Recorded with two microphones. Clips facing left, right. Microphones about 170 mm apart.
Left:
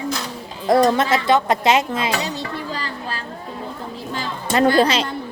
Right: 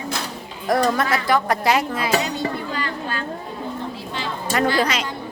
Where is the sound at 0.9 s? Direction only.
25° left (ahead or behind).